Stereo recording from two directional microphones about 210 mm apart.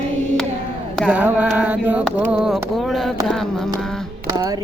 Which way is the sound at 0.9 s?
5° right (ahead or behind).